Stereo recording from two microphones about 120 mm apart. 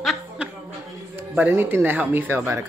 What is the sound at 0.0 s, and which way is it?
Chuckle, centre (ahead or behind).